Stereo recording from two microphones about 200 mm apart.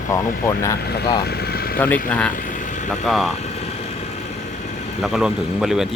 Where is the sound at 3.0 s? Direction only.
Centre (ahead or behind).